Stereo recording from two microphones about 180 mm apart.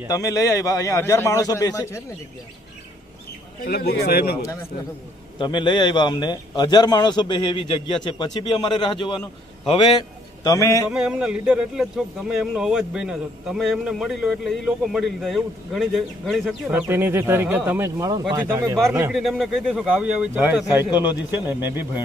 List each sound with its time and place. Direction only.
0.1 s a man's voice: 20° left (ahead or behind)
3.6 s speech: 60° left (ahead or behind)
5.4 s a man's voice: 25° left (ahead or behind)
10.4 s a man's voice: 20° left (ahead or behind)
10.9 s a man's voice: 5° right (ahead or behind)
16.8 s speech: 10° right (ahead or behind)
19.1 s a man's voice: centre (ahead or behind)